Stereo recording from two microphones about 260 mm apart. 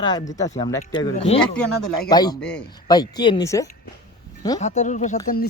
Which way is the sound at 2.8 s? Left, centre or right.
Centre.